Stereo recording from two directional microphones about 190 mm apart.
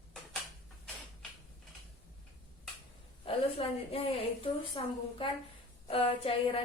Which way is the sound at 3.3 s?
30° left (ahead or behind).